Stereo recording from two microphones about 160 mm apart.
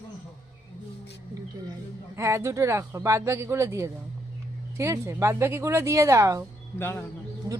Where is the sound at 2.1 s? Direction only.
15° right (ahead or behind).